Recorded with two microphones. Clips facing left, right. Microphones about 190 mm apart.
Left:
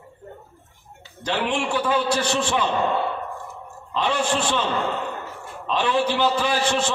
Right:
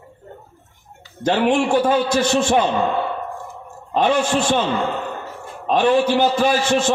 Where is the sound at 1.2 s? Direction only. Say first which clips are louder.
Right 7 dB; 45° right (ahead or behind).